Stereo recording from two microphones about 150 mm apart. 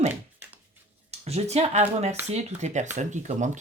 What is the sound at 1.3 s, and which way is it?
Speech, 45° right (ahead or behind).